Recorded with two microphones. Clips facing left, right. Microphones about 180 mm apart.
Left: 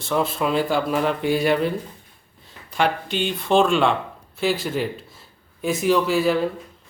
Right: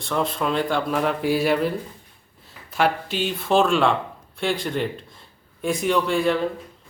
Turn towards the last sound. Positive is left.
turn(degrees=5)  # may be behind; listen again after turning